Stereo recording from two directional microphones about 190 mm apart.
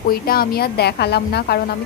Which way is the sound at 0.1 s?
50° left (ahead or behind).